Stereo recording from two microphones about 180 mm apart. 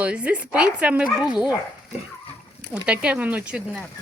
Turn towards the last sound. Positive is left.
turn(degrees=-5)  # may be behind; listen again after turning